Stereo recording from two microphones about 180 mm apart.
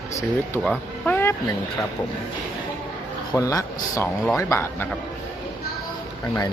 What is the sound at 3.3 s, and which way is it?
Speech, 20° left (ahead or behind).